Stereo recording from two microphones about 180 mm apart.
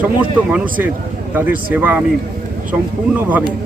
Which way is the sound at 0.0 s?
10° right (ahead or behind).